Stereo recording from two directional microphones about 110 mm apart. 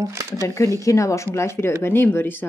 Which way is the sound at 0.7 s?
30° left (ahead or behind).